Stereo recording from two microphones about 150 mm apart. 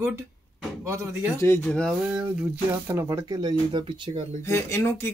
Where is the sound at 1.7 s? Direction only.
5° left (ahead or behind).